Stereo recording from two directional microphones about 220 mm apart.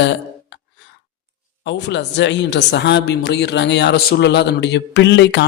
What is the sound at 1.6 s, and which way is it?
Speech, 50° left (ahead or behind).